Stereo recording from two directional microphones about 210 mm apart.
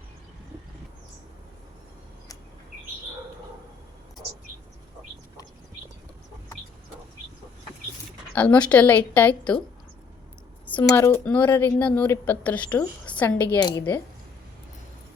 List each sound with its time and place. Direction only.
8.4 s speech: 5° left (ahead or behind)
10.9 s speech: 10° left (ahead or behind)
13.6 s speech: 20° left (ahead or behind)